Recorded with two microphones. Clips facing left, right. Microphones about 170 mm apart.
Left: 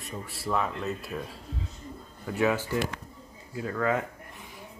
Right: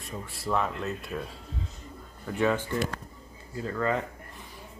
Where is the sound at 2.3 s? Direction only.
5° left (ahead or behind).